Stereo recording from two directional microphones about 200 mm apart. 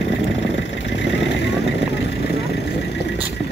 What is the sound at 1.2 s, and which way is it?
Vehicle, 60° left (ahead or behind).